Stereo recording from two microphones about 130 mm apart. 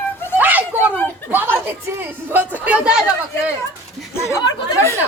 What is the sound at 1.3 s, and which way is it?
Speech, 15° right (ahead or behind).